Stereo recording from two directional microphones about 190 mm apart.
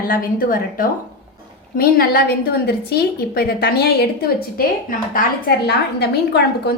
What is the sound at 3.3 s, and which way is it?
Speech, 55° left (ahead or behind).